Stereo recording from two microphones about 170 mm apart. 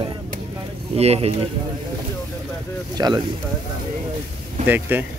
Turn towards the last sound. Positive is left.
turn(degrees=-10)  # may be behind; listen again after turning